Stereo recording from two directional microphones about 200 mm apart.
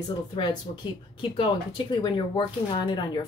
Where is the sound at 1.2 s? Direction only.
25° left (ahead or behind).